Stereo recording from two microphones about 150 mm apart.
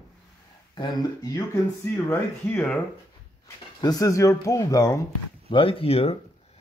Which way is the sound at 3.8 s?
25° left (ahead or behind).